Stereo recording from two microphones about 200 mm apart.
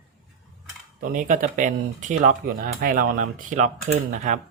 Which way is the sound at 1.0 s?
40° right (ahead or behind).